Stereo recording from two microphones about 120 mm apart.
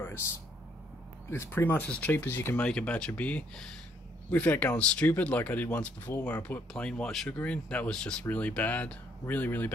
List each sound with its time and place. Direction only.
1.3 s speech: 20° left (ahead or behind)